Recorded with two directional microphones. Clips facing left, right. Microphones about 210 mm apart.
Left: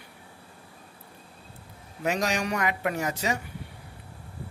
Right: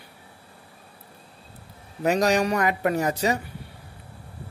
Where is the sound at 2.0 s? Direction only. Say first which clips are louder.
Right 6 dB; 35° right (ahead or behind).